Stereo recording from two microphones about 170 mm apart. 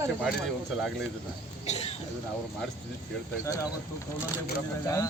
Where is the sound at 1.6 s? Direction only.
40° left (ahead or behind).